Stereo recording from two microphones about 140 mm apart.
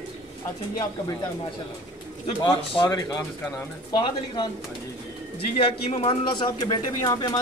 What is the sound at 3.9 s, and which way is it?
A man's voice, 35° left (ahead or behind).